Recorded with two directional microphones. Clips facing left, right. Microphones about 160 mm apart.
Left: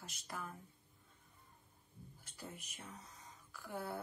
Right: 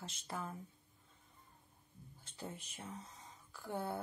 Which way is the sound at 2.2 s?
25° right (ahead or behind).